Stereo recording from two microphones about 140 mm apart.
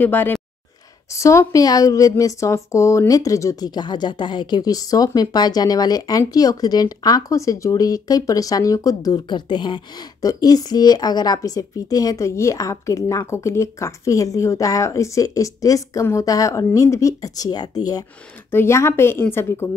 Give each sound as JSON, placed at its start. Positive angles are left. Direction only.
{"t": 0.0, "sound": "a woman's voice", "side_deg": 15}
{"t": 18.5, "sound": "a woman's voice", "side_deg": 20}